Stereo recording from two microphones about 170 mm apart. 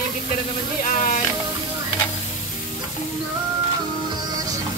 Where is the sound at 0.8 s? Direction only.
50° left (ahead or behind).